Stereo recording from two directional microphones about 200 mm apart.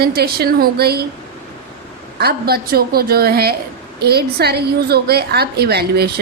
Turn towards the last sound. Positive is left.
turn(degrees=-55)  # may be behind; listen again after turning